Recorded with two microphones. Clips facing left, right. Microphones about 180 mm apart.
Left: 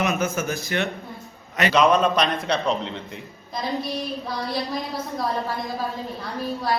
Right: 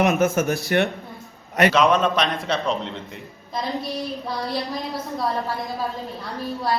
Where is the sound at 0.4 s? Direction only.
55° right (ahead or behind).